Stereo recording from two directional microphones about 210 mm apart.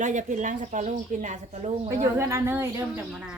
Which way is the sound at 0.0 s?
35° right (ahead or behind).